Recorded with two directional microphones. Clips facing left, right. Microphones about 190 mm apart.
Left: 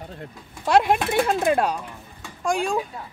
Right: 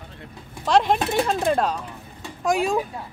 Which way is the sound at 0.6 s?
5° left (ahead or behind).